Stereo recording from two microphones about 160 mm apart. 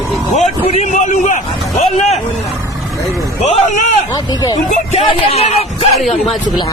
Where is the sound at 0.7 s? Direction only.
45° left (ahead or behind).